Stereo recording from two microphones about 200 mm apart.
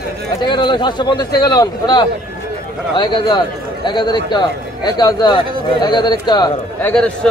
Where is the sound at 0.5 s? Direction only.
20° left (ahead or behind).